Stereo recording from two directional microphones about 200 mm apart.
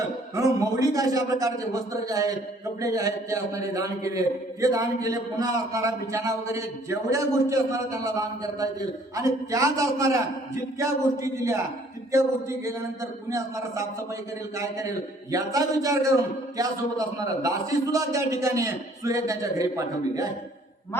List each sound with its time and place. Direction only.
0.3 s a man's voice: 15° right (ahead or behind)
20.9 s speech: 10° left (ahead or behind)